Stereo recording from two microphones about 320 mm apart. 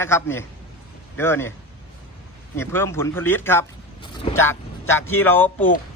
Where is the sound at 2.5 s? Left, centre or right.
Centre.